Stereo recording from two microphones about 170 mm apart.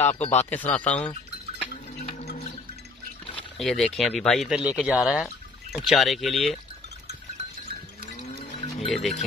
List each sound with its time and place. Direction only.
0.0 s speech: 40° left (ahead or behind)
0.7 s speech: 10° left (ahead or behind)
3.5 s speech: centre (ahead or behind)
8.4 s music: 35° left (ahead or behind)